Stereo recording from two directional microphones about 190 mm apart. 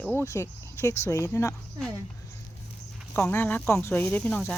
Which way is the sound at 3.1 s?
10° left (ahead or behind).